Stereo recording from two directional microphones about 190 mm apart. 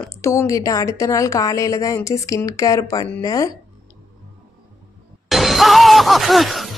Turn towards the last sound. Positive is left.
turn(degrees=0)  # may be behind; listen again after turning